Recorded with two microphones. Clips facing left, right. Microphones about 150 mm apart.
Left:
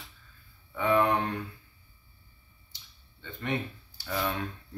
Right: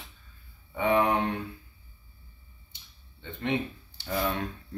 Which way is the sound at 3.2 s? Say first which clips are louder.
Right 3 dB; 20° right (ahead or behind).